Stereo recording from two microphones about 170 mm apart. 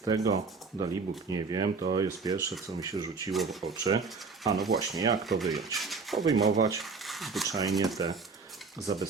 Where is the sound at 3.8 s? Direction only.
20° right (ahead or behind).